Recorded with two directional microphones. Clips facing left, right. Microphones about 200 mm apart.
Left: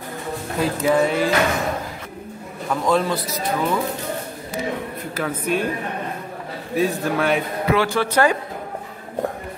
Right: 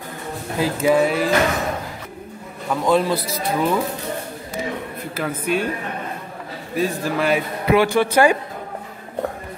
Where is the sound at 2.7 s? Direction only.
Centre (ahead or behind).